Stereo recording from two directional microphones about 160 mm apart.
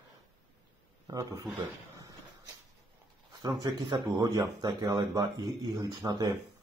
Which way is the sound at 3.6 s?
25° right (ahead or behind).